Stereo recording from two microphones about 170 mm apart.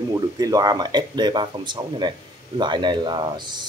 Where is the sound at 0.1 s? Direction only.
20° right (ahead or behind).